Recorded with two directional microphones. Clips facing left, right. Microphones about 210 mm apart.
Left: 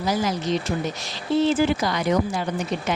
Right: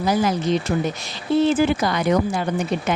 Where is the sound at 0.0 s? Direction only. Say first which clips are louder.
Right 4 dB; 55° right (ahead or behind).